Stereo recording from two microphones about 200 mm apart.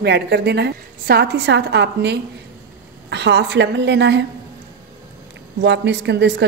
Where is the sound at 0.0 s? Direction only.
55° right (ahead or behind).